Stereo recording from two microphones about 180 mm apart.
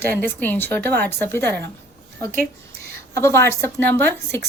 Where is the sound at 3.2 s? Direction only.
15° left (ahead or behind).